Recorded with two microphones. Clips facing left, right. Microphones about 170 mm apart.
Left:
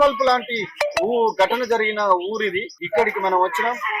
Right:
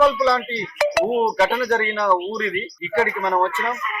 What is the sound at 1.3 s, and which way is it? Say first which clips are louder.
A man's voice: left 1 dB; centre (ahead or behind).